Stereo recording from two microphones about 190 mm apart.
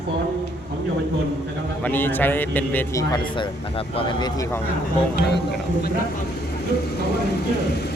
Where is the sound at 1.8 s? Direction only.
10° left (ahead or behind).